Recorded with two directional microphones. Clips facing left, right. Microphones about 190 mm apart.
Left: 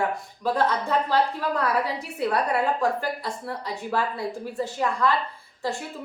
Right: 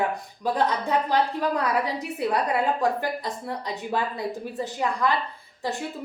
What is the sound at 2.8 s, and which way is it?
A woman's voice, 20° right (ahead or behind).